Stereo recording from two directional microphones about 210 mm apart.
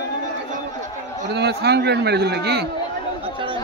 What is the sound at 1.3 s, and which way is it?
A man's voice, 50° right (ahead or behind).